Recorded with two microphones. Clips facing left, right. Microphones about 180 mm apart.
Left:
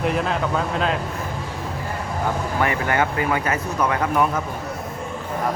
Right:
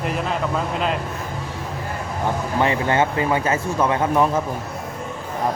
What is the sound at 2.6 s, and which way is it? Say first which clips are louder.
A man's voice: right 3 dB; 25° right (ahead or behind).